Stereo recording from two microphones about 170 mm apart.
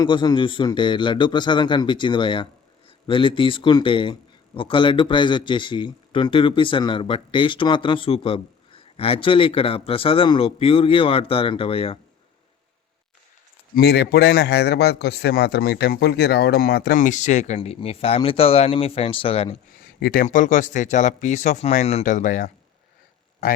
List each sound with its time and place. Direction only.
0.0 s speech: 25° left (ahead or behind)
13.7 s a man's voice: 70° left (ahead or behind)
17.0 s speech: 45° left (ahead or behind)
20.0 s speech: 60° left (ahead or behind)